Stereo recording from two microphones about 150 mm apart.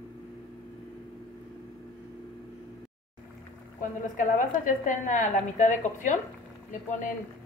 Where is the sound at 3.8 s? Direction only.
60° left (ahead or behind).